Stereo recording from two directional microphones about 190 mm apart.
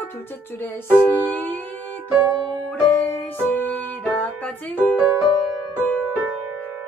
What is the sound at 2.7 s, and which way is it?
Music, 10° left (ahead or behind).